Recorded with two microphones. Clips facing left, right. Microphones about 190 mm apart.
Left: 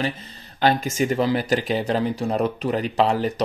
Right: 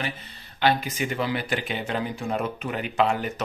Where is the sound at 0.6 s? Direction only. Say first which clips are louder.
Left 4 dB; 45° left (ahead or behind).